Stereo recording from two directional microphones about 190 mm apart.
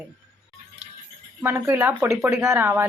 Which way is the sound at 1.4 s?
10° right (ahead or behind).